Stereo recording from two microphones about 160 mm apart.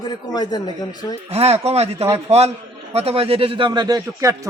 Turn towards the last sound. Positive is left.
turn(degrees=-20)  # may be behind; listen again after turning